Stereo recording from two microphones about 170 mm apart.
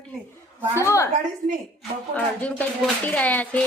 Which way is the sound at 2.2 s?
10° left (ahead or behind).